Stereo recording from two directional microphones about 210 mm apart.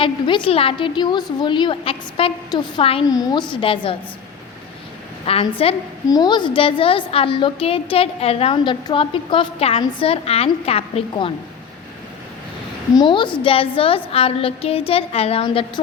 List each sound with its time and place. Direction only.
0.0 s a woman's voice: 25° left (ahead or behind)
5.2 s a woman's voice: 25° left (ahead or behind)
12.9 s a woman's voice: 20° left (ahead or behind)